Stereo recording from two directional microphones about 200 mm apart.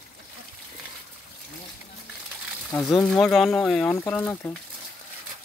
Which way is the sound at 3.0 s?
Centre (ahead or behind).